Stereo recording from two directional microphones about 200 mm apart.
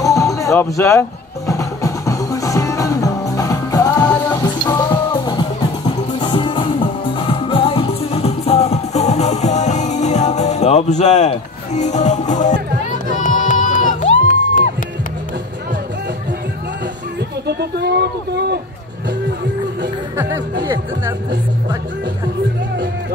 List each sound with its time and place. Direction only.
0.0 s music: 15° left (ahead or behind); by 14.6 s 40° left (ahead or behind)
17.5 s a sound: 55° right (ahead or behind)
20.6 s speech: 15° right (ahead or behind)